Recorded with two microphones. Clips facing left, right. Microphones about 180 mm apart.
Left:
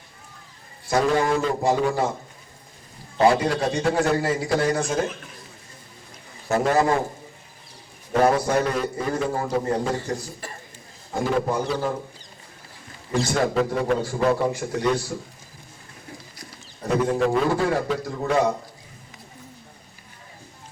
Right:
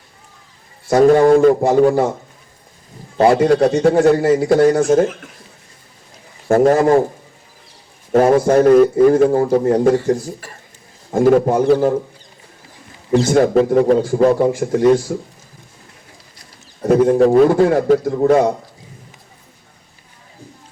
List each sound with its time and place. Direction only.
0.9 s a man's voice: 45° right (ahead or behind)
3.2 s a man's voice: 50° right (ahead or behind)
6.5 s a man's voice: 45° right (ahead or behind)
8.1 s a man's voice: 50° right (ahead or behind)
11.1 s a man's voice: 45° right (ahead or behind)
13.1 s a man's voice: 45° right (ahead or behind)
14.3 s a man's voice: 45° right (ahead or behind)
16.9 s a man's voice: 45° right (ahead or behind)